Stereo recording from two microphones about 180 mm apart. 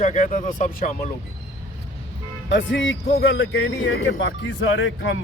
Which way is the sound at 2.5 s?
90° left.